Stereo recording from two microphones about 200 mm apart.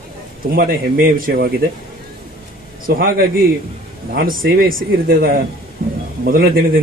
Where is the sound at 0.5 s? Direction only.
45° right (ahead or behind).